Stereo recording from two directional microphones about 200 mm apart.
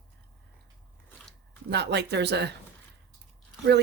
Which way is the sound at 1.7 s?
60° right (ahead or behind).